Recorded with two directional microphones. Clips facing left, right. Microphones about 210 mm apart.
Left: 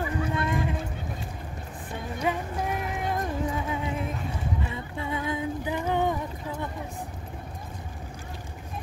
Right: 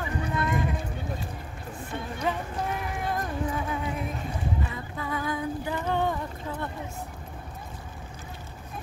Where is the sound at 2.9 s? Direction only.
20° left (ahead or behind).